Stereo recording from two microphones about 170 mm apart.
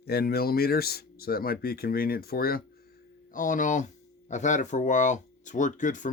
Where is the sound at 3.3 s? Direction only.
50° left (ahead or behind).